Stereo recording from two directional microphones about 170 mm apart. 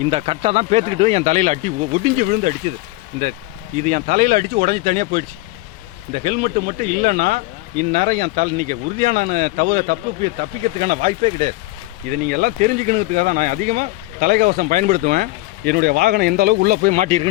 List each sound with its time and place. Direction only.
0.0 s speech: 35° right (ahead or behind)
3.8 s speech: 50° right (ahead or behind)
12.0 s speech: 65° right (ahead or behind); by 17.2 s 45° right (ahead or behind)